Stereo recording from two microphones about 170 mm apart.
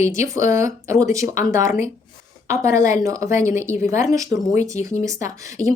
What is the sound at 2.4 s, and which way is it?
Speech, 15° right (ahead or behind).